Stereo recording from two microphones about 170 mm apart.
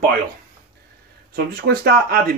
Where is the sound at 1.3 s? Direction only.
70° right (ahead or behind).